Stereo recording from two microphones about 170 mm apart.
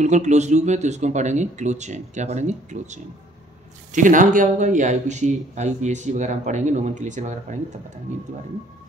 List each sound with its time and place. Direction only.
0.0 s speech: 45° right (ahead or behind)